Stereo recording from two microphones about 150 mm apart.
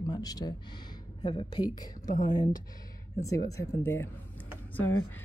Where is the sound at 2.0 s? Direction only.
60° left (ahead or behind).